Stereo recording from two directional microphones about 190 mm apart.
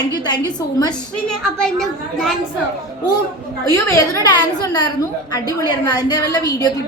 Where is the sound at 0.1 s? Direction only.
20° left (ahead or behind).